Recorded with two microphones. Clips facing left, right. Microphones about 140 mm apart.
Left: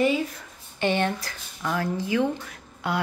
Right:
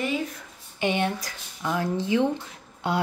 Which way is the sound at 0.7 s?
15° right (ahead or behind).